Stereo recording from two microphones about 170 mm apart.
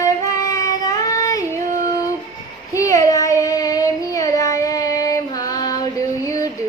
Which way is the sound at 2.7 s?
20° left (ahead or behind).